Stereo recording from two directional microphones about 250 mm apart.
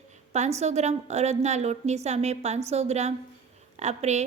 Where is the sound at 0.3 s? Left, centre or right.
Right.